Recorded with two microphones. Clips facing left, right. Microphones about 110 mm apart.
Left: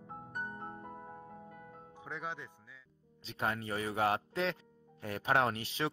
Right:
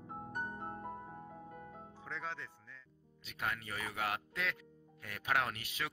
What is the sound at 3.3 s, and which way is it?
Speech, 30° left (ahead or behind).